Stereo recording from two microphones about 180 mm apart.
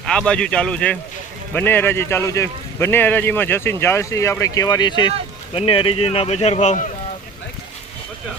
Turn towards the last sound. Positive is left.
turn(degrees=40)  # may be behind; listen again after turning